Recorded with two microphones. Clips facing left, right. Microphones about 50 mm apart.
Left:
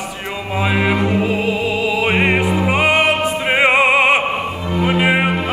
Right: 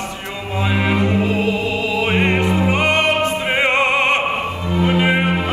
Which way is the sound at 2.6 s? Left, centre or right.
Centre.